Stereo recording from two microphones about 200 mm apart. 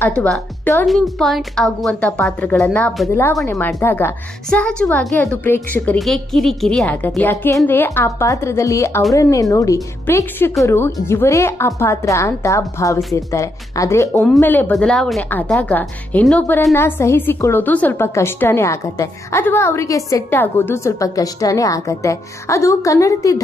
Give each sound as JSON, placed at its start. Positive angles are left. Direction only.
{"t": 0.0, "sound": "a woman's voice", "side_deg": 5}